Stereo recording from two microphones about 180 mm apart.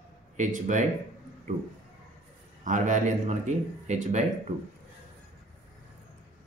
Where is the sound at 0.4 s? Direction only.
45° right (ahead or behind).